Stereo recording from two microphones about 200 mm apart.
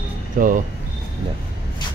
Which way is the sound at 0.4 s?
45° right (ahead or behind).